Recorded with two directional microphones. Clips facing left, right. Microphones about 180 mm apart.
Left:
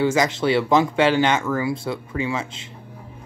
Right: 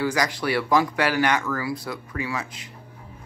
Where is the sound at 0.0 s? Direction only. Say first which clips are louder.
Left 5 dB; 25° left (ahead or behind).